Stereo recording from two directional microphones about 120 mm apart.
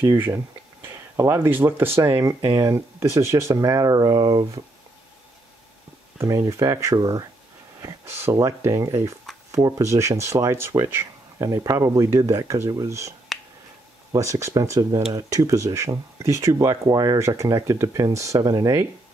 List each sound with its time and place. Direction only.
0.1 s speech: 20° right (ahead or behind)
6.1 s speech: 25° right (ahead or behind)
13.3 s finger snapping: centre (ahead or behind)
14.1 s speech: 25° right (ahead or behind)